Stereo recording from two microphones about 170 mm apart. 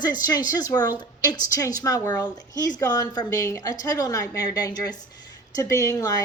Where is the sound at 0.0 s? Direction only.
25° left (ahead or behind).